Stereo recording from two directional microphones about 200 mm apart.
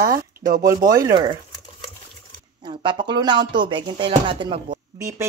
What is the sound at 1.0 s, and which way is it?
Speech, 20° right (ahead or behind).